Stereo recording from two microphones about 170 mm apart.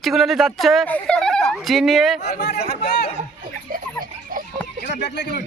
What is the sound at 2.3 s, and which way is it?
Speech, 75° left (ahead or behind).